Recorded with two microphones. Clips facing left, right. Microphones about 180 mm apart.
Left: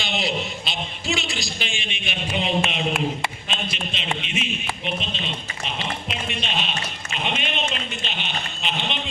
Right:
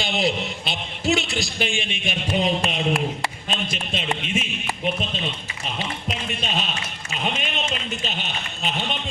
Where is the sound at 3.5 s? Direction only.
45° right (ahead or behind).